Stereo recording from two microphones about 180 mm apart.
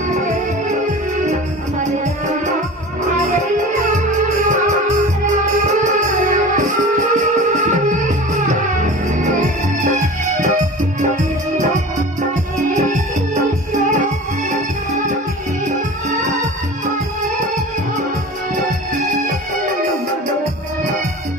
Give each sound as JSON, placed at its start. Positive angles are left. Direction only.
{"t": 0.1, "sound": "music", "side_deg": -40}
{"t": 4.5, "sound": "music", "side_deg": -40}
{"t": 9.8, "sound": "music", "side_deg": -45}
{"t": 12.7, "sound": "music", "side_deg": -45}